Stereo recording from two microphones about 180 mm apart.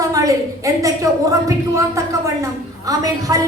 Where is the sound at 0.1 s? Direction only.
20° right (ahead or behind).